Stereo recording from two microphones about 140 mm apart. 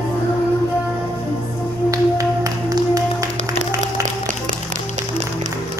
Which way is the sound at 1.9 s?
25° right (ahead or behind).